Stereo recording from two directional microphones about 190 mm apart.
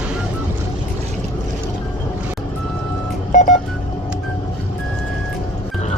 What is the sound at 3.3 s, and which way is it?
Telephone dialing, 45° left (ahead or behind).